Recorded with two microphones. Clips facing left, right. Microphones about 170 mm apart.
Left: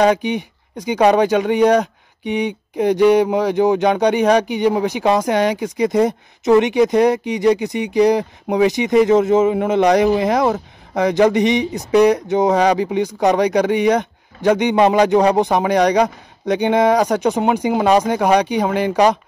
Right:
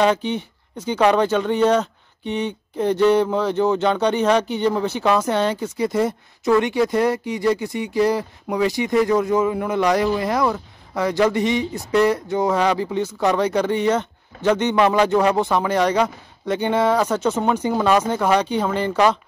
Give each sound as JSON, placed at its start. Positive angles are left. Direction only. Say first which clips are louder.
{"t": 0.0, "sound": "speech", "louder": "left 3 dB", "side_deg": 15}